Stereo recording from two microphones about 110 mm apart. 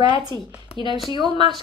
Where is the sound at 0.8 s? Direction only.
55° left (ahead or behind).